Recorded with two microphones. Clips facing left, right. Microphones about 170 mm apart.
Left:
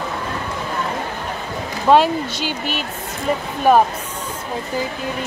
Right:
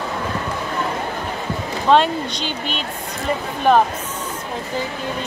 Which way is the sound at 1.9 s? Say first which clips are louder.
Left 2 dB; 10° left (ahead or behind).